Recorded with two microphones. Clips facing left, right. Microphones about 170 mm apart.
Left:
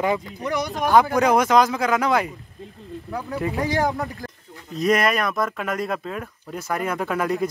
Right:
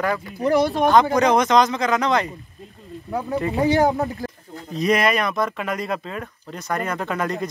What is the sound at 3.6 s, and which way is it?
Speech, 25° right (ahead or behind).